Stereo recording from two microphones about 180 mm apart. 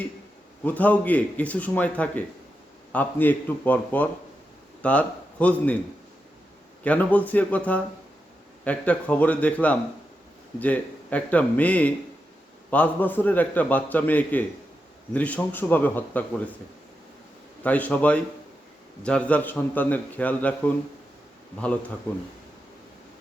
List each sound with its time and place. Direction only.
0.6 s a man's voice: 10° left (ahead or behind)
6.8 s a man's voice: 10° left (ahead or behind)
17.6 s a man's voice: 10° left (ahead or behind)